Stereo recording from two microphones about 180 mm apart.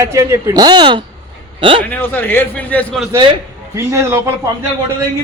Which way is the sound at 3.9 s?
15° right (ahead or behind).